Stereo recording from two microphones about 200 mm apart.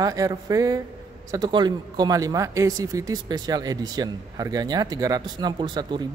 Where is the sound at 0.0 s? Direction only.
20° right (ahead or behind).